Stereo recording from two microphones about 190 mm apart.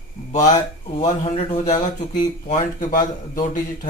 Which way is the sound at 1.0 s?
35° left (ahead or behind).